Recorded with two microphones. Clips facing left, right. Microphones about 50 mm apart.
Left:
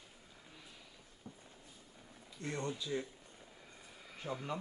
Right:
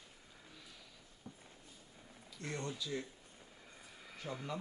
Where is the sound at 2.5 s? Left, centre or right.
Centre.